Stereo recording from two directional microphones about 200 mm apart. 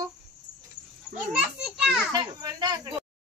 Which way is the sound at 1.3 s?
5° right (ahead or behind).